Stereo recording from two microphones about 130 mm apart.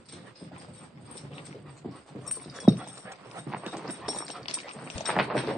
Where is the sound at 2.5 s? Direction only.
5° right (ahead or behind).